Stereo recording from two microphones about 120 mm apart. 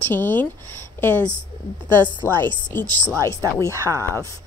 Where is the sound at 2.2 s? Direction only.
20° left (ahead or behind).